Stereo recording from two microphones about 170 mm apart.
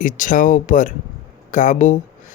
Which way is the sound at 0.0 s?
50° left (ahead or behind).